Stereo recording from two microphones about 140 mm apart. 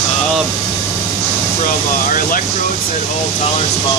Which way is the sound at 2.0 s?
75° left (ahead or behind).